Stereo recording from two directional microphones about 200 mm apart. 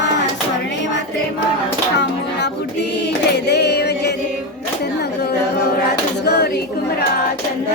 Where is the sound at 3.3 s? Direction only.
55° left (ahead or behind).